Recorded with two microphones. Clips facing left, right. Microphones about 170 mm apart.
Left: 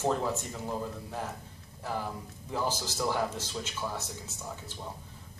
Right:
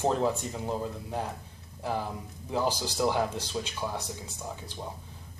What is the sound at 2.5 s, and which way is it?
Speech, 20° right (ahead or behind).